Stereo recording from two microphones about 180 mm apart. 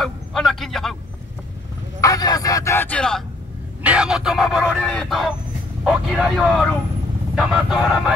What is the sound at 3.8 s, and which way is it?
Speech, 5° right (ahead or behind).